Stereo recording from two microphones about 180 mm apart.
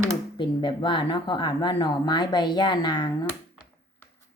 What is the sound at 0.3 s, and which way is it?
Speech, 25° left (ahead or behind).